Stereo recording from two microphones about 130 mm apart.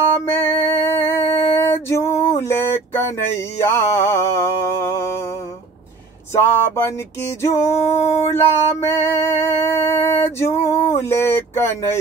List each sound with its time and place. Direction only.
0.1 s music: 20° left (ahead or behind)
6.3 s music: 20° left (ahead or behind)